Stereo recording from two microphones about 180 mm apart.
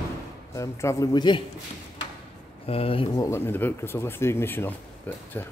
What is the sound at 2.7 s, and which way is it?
Speech, 30° left (ahead or behind).